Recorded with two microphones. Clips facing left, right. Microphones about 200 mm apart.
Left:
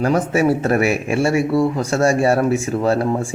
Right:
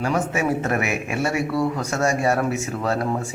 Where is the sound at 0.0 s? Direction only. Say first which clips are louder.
Left 6 dB; 35° left (ahead or behind).